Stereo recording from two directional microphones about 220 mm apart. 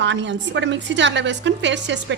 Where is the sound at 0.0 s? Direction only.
55° right (ahead or behind).